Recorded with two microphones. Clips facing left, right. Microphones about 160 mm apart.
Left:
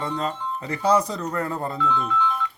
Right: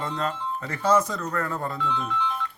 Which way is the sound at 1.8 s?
Centre (ahead or behind).